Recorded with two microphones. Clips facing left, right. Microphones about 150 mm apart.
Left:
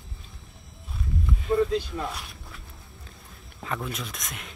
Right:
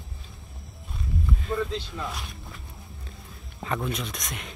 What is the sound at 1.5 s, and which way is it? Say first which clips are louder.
Speech: left 6 dB; 15° left (ahead or behind).